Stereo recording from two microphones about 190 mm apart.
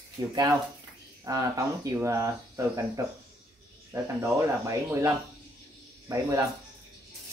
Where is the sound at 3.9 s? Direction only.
15° right (ahead or behind).